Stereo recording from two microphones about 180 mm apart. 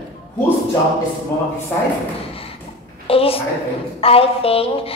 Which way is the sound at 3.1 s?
30° left (ahead or behind).